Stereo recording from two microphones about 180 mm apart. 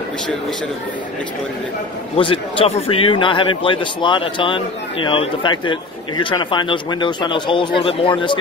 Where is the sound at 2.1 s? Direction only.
30° left (ahead or behind).